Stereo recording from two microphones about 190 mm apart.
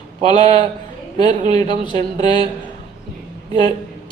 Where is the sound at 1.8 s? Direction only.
25° left (ahead or behind).